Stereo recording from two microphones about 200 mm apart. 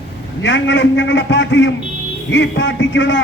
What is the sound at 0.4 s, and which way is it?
A man's voice, 65° left (ahead or behind).